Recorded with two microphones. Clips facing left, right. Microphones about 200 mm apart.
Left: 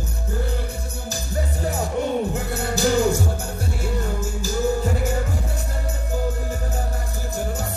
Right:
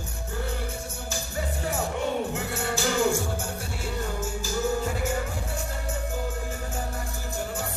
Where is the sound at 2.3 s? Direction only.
40° left (ahead or behind).